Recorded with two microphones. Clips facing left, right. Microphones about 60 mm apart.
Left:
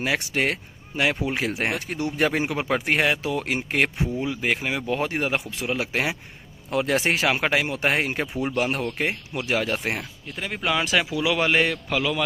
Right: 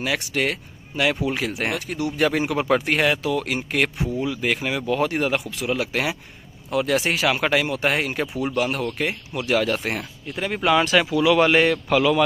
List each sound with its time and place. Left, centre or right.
0.0 s speech: left
10.4 s speech: centre